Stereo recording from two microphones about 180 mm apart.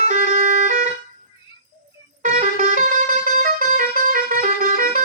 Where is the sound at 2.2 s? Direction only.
45° right (ahead or behind).